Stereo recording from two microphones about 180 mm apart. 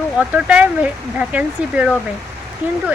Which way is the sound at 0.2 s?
5° right (ahead or behind).